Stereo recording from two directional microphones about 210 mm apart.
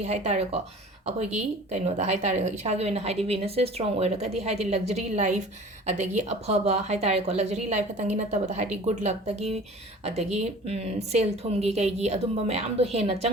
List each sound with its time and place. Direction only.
0.0 s speech: 30° right (ahead or behind)